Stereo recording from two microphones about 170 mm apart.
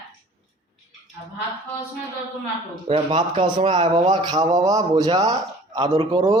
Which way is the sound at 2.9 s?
35° right (ahead or behind).